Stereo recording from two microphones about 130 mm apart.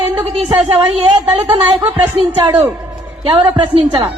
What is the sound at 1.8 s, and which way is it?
A woman's voice, 45° right (ahead or behind).